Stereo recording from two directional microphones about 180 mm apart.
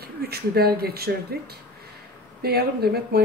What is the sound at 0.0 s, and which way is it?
Speech, 60° right (ahead or behind).